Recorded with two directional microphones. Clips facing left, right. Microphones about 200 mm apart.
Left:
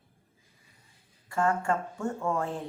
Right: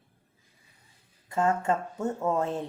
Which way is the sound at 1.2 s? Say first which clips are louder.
Right 1 dB; 20° right (ahead or behind).